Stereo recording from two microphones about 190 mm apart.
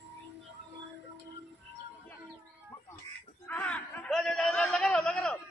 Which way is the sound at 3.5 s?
5° left (ahead or behind).